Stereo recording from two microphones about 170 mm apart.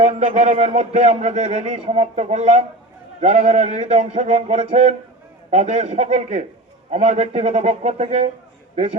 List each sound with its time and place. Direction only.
0.0 s a man's voice: 40° right (ahead or behind)